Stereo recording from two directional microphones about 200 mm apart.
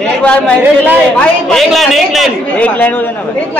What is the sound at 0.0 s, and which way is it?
A man's voice, 5° left (ahead or behind).